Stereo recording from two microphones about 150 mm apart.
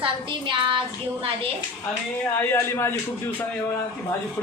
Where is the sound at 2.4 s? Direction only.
15° left (ahead or behind).